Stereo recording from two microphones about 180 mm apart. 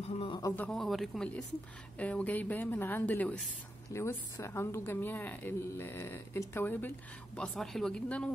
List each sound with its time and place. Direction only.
0.1 s a sound: 30° left (ahead or behind)
0.4 s a woman's voice: 15° left (ahead or behind)
0.7 s a woman's voice: centre (ahead or behind)